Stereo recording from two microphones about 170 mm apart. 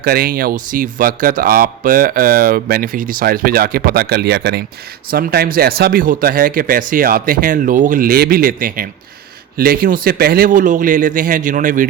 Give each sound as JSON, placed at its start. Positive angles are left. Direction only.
{"t": 0.0, "sound": "a man's voice", "side_deg": -60}